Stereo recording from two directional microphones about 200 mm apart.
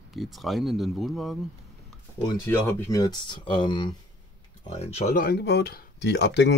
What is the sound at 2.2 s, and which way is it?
Speech, 15° left (ahead or behind).